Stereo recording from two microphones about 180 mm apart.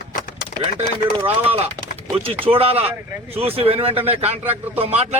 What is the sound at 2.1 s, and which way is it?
Speech, 30° right (ahead or behind).